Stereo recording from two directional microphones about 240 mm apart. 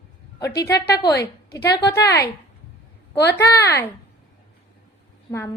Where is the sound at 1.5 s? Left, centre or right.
Left.